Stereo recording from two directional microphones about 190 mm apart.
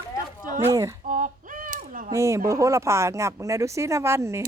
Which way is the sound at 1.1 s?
45° right (ahead or behind).